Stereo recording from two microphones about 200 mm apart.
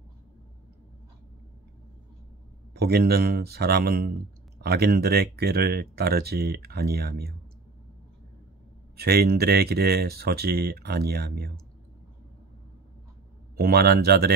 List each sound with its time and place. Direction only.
2.7 s speech: 55° right (ahead or behind)
8.9 s speech: 50° right (ahead or behind)
13.6 s speech: 50° right (ahead or behind)